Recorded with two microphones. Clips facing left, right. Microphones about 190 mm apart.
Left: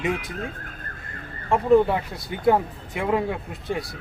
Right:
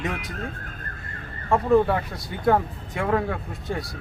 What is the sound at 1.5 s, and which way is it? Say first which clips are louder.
Speech: left 1 dB; 15° left (ahead or behind).